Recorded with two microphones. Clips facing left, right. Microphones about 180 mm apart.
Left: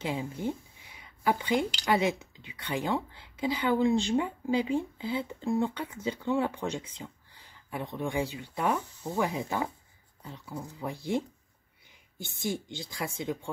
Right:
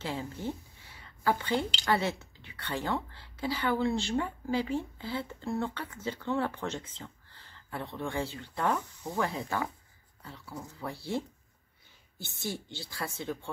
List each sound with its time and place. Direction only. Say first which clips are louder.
0.0 s a woman's voice: left 3 dB; 15° left (ahead or behind)